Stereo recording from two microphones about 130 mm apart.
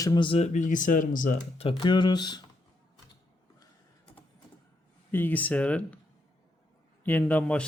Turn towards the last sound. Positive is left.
turn(degrees=10)  # may be behind; listen again after turning